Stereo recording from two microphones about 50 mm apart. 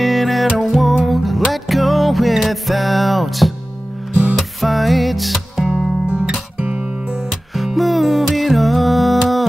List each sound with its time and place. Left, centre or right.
0.0 s music: centre
4.1 s music: right
4.6 s music: centre
6.0 s guitar: right
6.6 s music: right
7.2 s music: centre